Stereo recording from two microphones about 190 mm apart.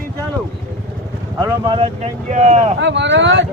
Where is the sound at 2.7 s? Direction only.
70° right (ahead or behind).